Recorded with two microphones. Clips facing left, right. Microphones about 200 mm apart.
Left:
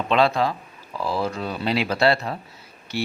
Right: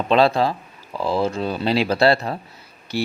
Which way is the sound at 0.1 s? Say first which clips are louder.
Right 3 dB; 35° right (ahead or behind).